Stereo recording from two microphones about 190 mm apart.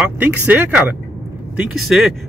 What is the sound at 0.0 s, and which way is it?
Speech, 10° right (ahead or behind).